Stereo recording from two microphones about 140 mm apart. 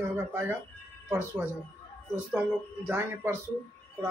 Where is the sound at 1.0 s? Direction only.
15° right (ahead or behind).